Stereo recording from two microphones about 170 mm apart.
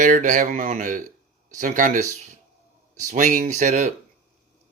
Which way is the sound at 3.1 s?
50° right (ahead or behind).